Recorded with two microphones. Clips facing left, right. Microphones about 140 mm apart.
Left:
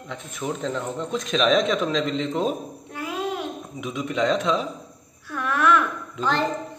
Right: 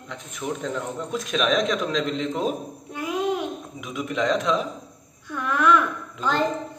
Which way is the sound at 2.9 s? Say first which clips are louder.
Right 4 dB; 15° right (ahead or behind).